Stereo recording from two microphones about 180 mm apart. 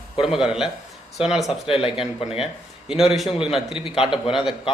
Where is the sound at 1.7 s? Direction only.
30° left (ahead or behind).